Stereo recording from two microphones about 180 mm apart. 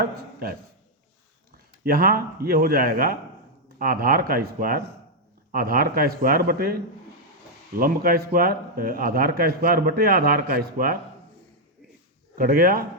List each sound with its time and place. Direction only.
0.0 s speech: 55° right (ahead or behind)
1.8 s speech: 55° right (ahead or behind)
7.8 s speech: 55° right (ahead or behind)
12.4 s speech: 55° right (ahead or behind)